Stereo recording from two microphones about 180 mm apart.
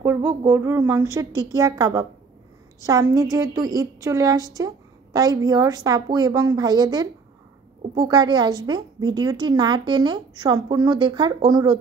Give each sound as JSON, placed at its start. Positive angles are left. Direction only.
{"t": 0.0, "sound": "a woman's voice", "side_deg": -15}